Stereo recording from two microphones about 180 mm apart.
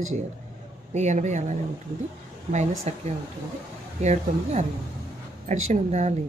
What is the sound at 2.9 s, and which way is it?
Speech, 40° right (ahead or behind).